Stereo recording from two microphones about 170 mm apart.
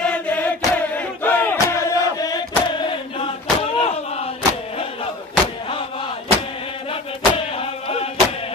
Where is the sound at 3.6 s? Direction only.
35° left (ahead or behind).